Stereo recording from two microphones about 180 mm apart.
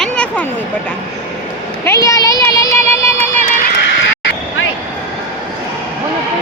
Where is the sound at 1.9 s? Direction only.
20° left (ahead or behind).